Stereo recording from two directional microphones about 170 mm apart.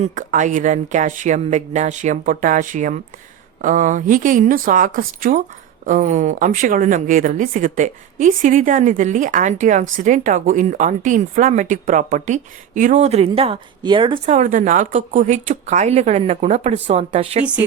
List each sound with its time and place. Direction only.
0.0 s speech: 50° right (ahead or behind); by 14.2 s 30° right (ahead or behind)
14.3 s speech: 45° right (ahead or behind)